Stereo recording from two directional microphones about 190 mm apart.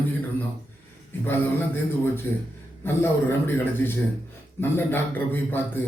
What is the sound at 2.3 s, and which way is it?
Speech, 10° left (ahead or behind).